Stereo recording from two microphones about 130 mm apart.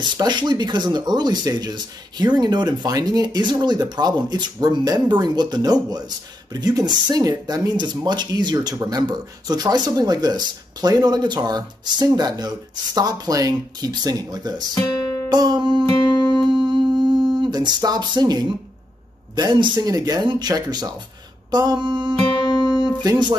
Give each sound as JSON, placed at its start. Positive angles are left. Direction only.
{"t": 0.0, "sound": "speech", "side_deg": -35}
{"t": 16.5, "sound": "a sound", "side_deg": -35}
{"t": 19.3, "sound": "speech", "side_deg": -35}
{"t": 22.6, "sound": "music", "side_deg": -35}